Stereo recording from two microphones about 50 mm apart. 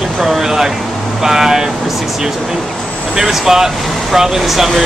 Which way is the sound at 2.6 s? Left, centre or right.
Centre.